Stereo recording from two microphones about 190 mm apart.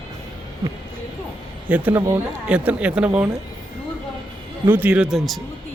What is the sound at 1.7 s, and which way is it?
Speech, 10° right (ahead or behind).